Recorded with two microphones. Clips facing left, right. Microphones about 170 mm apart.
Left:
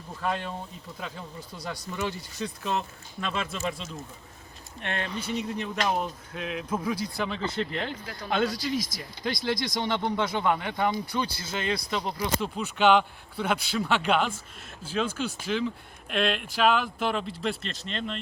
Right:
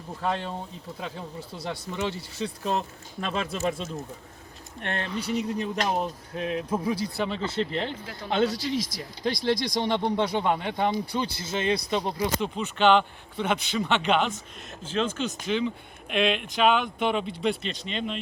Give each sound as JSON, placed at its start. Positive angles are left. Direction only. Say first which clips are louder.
{"t": 0.2, "sound": "speech", "louder": "right 1 dB", "side_deg": -25}
{"t": 12.4, "sound": "speech", "louder": "left 1 dB", "side_deg": 5}